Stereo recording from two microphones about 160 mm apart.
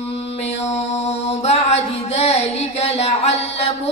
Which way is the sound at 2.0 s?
40° left (ahead or behind).